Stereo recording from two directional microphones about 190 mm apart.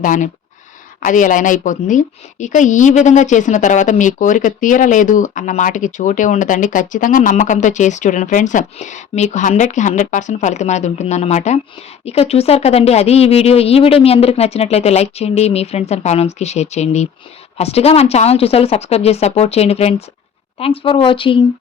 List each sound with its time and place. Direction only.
0.0 s a woman's voice: 40° left (ahead or behind)